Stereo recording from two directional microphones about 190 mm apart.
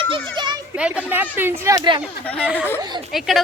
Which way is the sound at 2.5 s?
10° left (ahead or behind).